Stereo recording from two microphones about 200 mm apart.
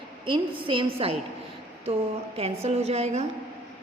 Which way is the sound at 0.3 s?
25° right (ahead or behind).